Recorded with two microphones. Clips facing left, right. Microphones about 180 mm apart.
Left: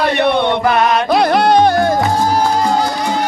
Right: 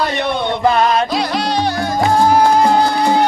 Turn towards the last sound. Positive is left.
turn(degrees=50)  # may be behind; listen again after turning